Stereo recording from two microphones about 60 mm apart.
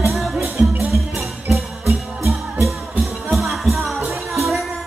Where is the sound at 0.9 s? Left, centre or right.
Centre.